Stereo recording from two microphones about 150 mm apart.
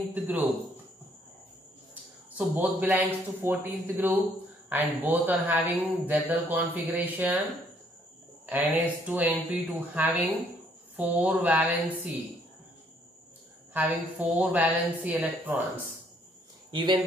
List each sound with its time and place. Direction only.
0.1 s speech: 10° right (ahead or behind)
2.3 s speech: 10° right (ahead or behind)
8.5 s speech: 10° right (ahead or behind)
13.7 s speech: 10° right (ahead or behind)
16.7 s speech: 35° right (ahead or behind)